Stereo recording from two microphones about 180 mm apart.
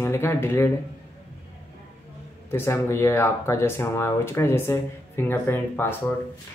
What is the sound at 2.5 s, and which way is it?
Speech, 15° left (ahead or behind).